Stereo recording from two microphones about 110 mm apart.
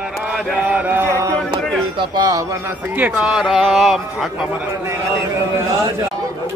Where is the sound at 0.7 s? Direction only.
20° right (ahead or behind).